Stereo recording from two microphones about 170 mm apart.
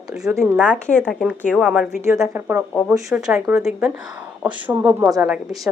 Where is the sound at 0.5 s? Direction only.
5° left (ahead or behind).